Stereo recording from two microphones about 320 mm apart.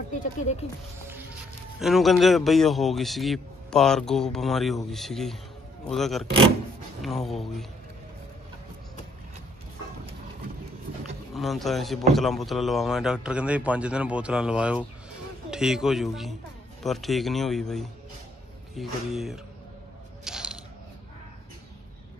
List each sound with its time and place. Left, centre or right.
0.1 s speech: left
1.8 s a man's voice: centre
11.3 s a man's voice: centre
20.2 s a sound: centre